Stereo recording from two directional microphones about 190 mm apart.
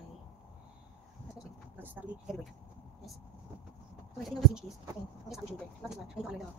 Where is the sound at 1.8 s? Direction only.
5° right (ahead or behind).